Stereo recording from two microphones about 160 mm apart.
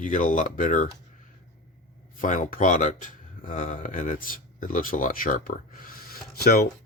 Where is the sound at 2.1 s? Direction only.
55° left (ahead or behind).